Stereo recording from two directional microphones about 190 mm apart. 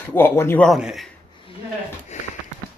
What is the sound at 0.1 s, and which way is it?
Speech, 10° left (ahead or behind).